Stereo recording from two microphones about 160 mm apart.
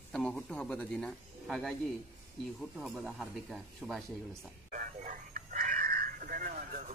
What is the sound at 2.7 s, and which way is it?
Speech, centre (ahead or behind).